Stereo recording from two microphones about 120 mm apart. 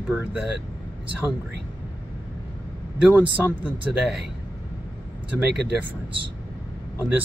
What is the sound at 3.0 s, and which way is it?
Speech, 10° right (ahead or behind).